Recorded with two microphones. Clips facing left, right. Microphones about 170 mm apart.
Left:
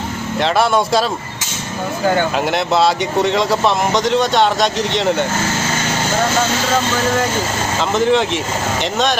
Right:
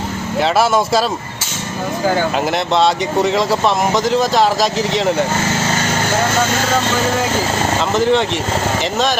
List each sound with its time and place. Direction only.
0.3 s speech: centre (ahead or behind)
2.0 s speech: centre (ahead or behind)
7.9 s speech: centre (ahead or behind)